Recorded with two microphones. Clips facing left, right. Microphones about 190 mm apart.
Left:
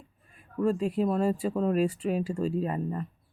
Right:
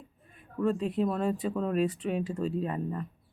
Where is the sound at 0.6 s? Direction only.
10° left (ahead or behind).